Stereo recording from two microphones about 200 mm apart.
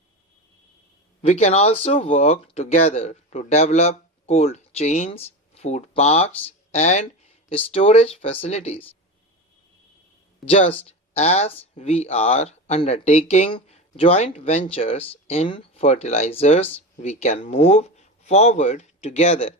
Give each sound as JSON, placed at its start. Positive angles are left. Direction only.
{"t": 1.3, "sound": "speech", "side_deg": 35}
{"t": 10.4, "sound": "speech", "side_deg": 30}